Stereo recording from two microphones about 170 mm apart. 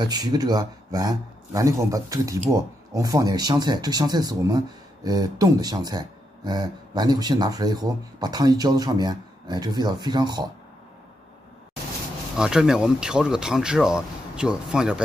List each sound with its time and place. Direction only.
0.0 s speech: 25° right (ahead or behind)
12.4 s speech: 5° right (ahead or behind)